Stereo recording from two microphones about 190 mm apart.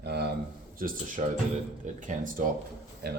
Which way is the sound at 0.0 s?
55° right (ahead or behind).